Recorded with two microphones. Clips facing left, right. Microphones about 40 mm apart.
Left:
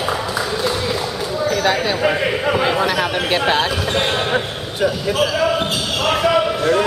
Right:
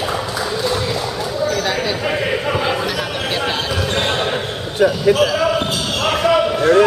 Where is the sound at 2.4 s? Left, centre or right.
Centre.